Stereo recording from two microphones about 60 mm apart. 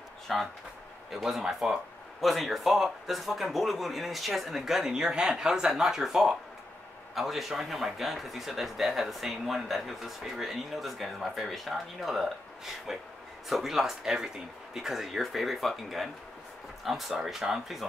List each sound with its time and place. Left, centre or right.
0.3 s speech: centre
13.5 s speech: centre
17.1 s speech: centre